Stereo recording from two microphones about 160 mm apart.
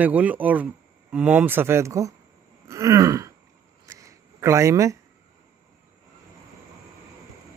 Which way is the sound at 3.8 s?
20° right (ahead or behind).